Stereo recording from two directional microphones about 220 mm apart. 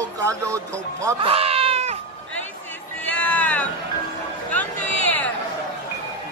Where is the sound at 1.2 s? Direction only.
25° right (ahead or behind).